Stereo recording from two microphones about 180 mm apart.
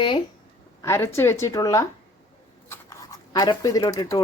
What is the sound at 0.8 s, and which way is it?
A woman's voice, 15° left (ahead or behind).